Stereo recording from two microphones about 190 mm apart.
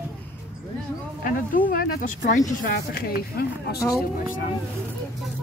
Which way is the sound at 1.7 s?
50° left (ahead or behind).